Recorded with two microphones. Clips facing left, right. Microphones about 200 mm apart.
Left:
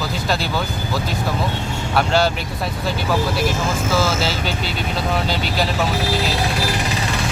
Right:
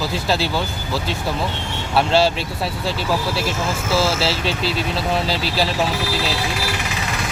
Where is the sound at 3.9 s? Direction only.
30° right (ahead or behind).